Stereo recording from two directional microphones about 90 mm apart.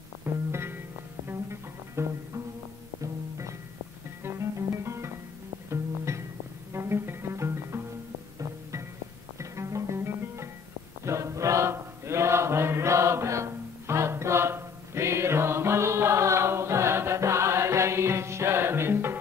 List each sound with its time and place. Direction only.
0.2 s music: 25° right (ahead or behind)
9.4 s music: 35° right (ahead or behind)
11.1 s chant: 35° right (ahead or behind)